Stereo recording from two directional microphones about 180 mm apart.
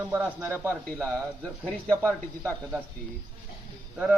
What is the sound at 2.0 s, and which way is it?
Speech, 15° right (ahead or behind).